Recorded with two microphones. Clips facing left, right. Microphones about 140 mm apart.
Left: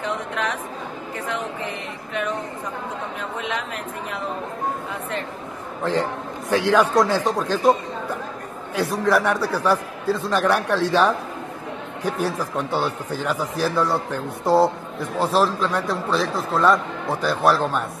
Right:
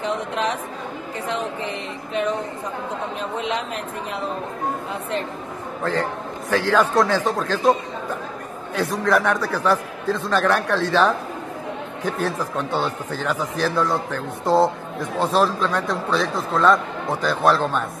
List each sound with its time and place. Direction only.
0.0 s a woman's voice: 25° right (ahead or behind)
3.3 s a woman's voice: 25° right (ahead or behind)
6.5 s a man's voice: 15° left (ahead or behind)